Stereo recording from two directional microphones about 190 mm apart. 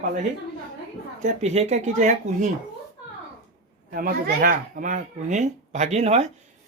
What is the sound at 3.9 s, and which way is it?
A man's voice, 50° right (ahead or behind).